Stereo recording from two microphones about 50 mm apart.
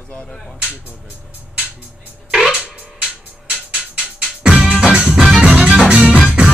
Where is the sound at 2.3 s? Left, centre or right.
Centre.